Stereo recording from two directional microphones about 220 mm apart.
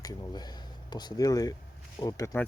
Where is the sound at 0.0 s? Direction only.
15° left (ahead or behind).